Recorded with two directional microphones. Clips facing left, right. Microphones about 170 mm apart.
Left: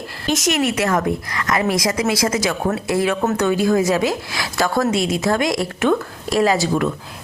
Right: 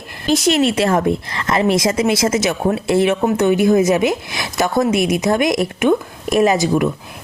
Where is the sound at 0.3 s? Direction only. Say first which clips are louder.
Right 4 dB; 30° right (ahead or behind).